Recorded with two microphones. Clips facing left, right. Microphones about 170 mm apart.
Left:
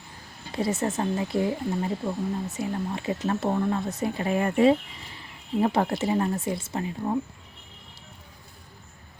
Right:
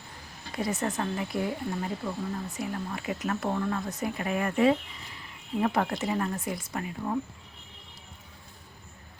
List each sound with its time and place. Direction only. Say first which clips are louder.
0.5 s speech: left 4 dB; 25° left (ahead or behind)